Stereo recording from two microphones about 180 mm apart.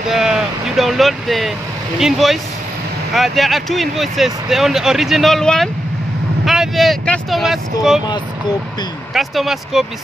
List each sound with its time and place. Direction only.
0.1 s speech: centre (ahead or behind)
9.1 s speech: centre (ahead or behind)